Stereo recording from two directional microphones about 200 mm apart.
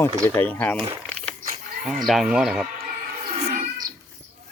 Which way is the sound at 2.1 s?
Centre (ahead or behind).